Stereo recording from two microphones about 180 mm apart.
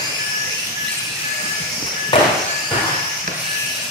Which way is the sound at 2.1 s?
30° left (ahead or behind).